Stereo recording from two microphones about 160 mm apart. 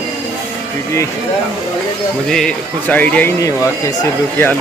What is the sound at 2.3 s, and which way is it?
Speech, 5° left (ahead or behind).